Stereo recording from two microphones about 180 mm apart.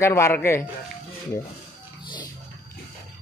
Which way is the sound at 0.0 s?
15° left (ahead or behind).